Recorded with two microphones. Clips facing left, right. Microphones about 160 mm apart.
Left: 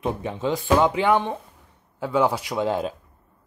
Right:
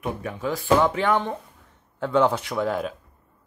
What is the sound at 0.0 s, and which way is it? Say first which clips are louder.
Speech: left 3 dB; 25° left (ahead or behind).